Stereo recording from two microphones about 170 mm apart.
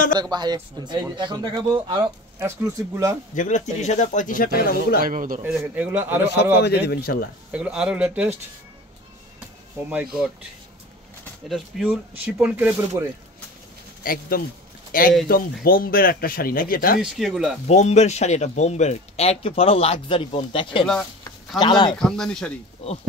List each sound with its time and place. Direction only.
0.2 s a man's voice: 25° right (ahead or behind)
3.3 s speech: 45° left (ahead or behind); by 5.0 s 60° left (ahead or behind)
5.0 s a man's voice: 55° right (ahead or behind)
5.4 s speech: 10° right (ahead or behind)
6.6 s speech: 70° left (ahead or behind)
7.5 s speech: 5° right (ahead or behind)
11.4 s speech: 5° right (ahead or behind)
14.0 s speech: 60° left (ahead or behind)
17.0 s speech: centre (ahead or behind)
17.6 s speech: 40° left (ahead or behind)
20.8 s speech: 5° left (ahead or behind)
21.5 s speech: 25° left (ahead or behind)
21.9 s speech: 5° left (ahead or behind)